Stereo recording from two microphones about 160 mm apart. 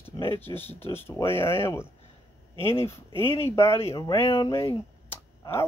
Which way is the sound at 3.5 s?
15° left (ahead or behind).